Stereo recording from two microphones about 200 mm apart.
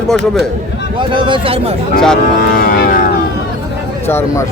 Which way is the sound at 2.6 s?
50° left (ahead or behind).